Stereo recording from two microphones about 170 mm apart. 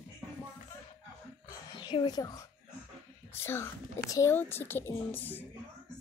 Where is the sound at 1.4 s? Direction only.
25° left (ahead or behind).